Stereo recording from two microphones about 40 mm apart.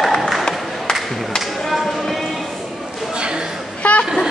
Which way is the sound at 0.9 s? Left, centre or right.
Centre.